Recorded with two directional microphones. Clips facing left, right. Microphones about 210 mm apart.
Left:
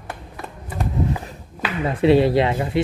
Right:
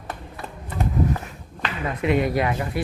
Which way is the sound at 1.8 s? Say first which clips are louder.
Left 7 dB; 30° left (ahead or behind).